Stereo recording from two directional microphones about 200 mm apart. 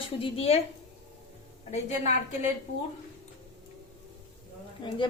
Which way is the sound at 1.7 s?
35° left (ahead or behind).